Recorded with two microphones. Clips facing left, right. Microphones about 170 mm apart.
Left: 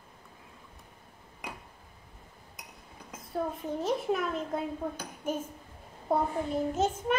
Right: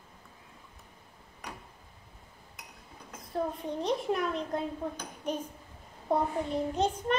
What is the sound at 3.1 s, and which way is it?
A child's voice, 5° left (ahead or behind).